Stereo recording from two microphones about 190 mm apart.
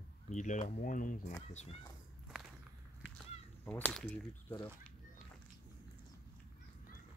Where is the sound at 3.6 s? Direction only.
5° left (ahead or behind).